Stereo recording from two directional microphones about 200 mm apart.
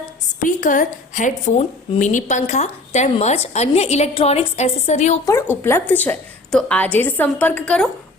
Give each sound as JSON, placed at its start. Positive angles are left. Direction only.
{"t": 0.3, "sound": "a woman's voice", "side_deg": 40}
{"t": 5.2, "sound": "a woman's voice", "side_deg": 15}